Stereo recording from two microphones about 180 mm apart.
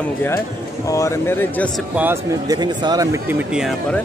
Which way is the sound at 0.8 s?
15° left (ahead or behind).